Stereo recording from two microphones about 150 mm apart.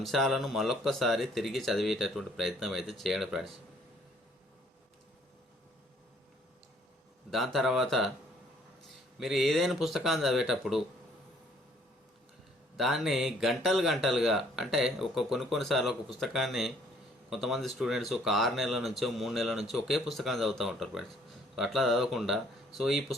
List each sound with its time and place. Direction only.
0.0 s speech: centre (ahead or behind)
7.3 s speech: centre (ahead or behind)
9.1 s speech: centre (ahead or behind)
12.7 s speech: centre (ahead or behind)